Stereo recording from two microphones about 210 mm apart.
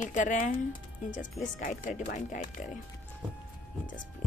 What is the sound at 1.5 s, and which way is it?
Speech, 40° left (ahead or behind).